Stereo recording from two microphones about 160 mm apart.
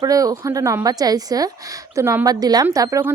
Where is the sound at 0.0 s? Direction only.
20° right (ahead or behind).